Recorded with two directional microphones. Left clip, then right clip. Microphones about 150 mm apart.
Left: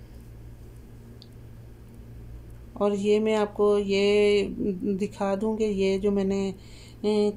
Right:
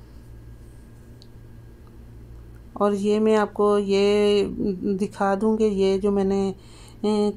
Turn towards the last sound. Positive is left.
turn(degrees=-35)  # may be behind; listen again after turning